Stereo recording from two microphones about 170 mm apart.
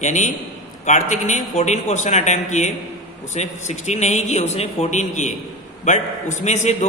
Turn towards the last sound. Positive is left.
turn(degrees=40)  # may be behind; listen again after turning